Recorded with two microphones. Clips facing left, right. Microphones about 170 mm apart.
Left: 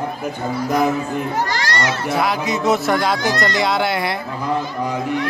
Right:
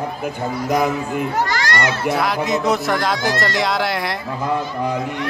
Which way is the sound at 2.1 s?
Centre (ahead or behind).